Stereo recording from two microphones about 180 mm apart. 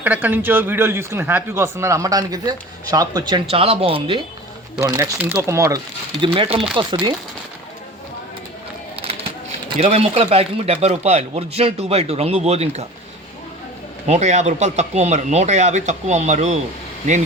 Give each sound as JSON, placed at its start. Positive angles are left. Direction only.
{"t": 0.0, "sound": "speech", "side_deg": -10}
{"t": 3.5, "sound": "a man's voice", "side_deg": -35}
{"t": 4.8, "sound": "speech", "side_deg": -15}
{"t": 6.2, "sound": "speech", "side_deg": -30}
{"t": 9.8, "sound": "a man's voice", "side_deg": -35}
{"t": 14.1, "sound": "a man's voice", "side_deg": -40}